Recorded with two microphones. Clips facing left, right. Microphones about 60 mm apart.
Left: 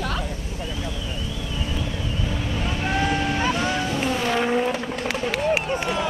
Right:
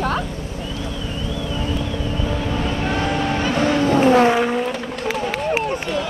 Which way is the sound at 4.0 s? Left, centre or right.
Right.